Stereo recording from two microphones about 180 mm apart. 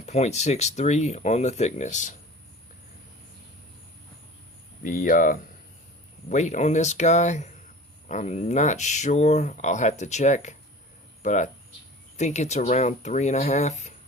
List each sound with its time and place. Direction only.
0.0 s speech: 40° left (ahead or behind)
4.8 s speech: 45° left (ahead or behind)